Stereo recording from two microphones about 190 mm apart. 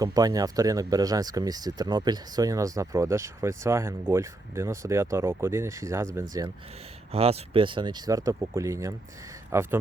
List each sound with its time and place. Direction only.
0.0 s speech: 20° right (ahead or behind)
7.1 s speech: 30° right (ahead or behind); by 9.7 s 10° right (ahead or behind)